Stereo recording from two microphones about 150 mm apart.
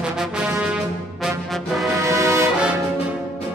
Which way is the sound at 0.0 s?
5° right (ahead or behind).